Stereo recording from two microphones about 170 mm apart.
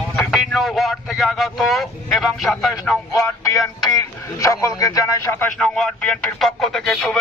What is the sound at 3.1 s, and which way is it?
A man's voice, 20° left (ahead or behind).